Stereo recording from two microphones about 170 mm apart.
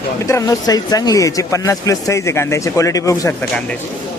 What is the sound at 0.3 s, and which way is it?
Speech, 20° left (ahead or behind).